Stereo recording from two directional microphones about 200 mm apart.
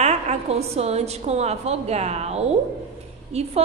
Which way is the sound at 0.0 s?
35° right (ahead or behind).